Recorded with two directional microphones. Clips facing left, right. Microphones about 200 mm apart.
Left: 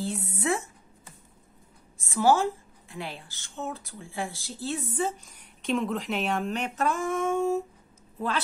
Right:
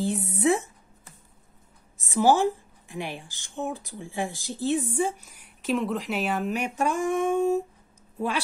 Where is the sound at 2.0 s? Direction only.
15° right (ahead or behind).